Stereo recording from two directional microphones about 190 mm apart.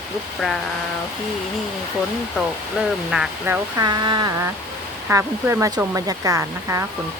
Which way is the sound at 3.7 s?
20° right (ahead or behind).